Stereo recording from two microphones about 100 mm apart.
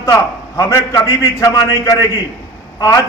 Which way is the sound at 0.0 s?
35° left (ahead or behind).